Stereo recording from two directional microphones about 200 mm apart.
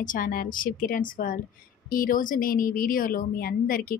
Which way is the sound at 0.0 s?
45° left (ahead or behind).